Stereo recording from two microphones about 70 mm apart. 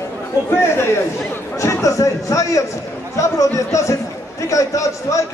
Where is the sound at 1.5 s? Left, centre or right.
Left.